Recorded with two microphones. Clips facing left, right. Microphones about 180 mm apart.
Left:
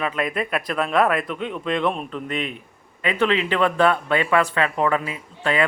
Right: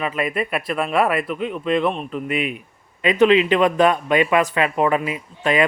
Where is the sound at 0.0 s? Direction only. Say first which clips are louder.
Right 1 dB; 5° right (ahead or behind).